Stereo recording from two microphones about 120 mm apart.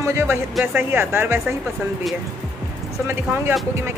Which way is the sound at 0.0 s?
20° right (ahead or behind).